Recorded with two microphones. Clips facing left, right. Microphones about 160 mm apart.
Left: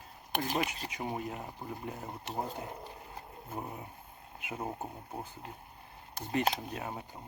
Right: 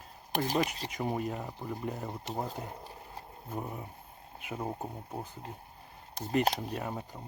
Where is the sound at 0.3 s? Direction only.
35° right (ahead or behind).